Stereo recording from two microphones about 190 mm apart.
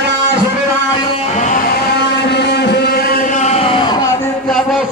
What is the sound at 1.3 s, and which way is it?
Music, 40° left (ahead or behind).